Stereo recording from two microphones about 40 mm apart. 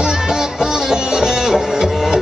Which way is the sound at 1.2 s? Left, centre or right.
Centre.